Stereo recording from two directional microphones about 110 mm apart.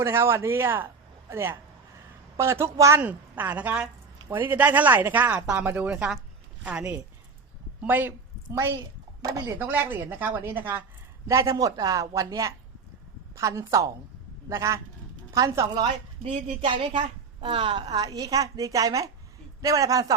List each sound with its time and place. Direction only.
0.0 s speech: 25° right (ahead or behind)
3.0 s a woman's voice: 15° right (ahead or behind)
11.3 s a woman's voice: 30° right (ahead or behind)
16.2 s a woman's voice: 55° right (ahead or behind); by 20.1 s 30° right (ahead or behind)